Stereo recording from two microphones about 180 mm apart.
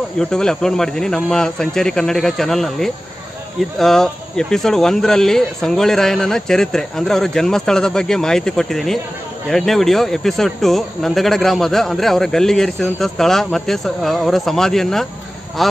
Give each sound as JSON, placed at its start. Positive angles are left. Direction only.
{"t": 0.2, "sound": "speech", "side_deg": 5}